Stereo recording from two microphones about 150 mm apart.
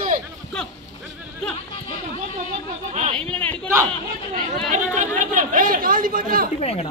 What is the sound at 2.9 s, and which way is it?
Speech, 45° right (ahead or behind).